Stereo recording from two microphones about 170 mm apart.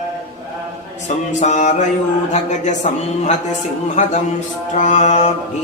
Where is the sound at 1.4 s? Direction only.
45° left (ahead or behind).